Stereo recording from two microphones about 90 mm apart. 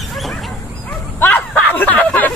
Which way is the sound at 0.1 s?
Centre (ahead or behind).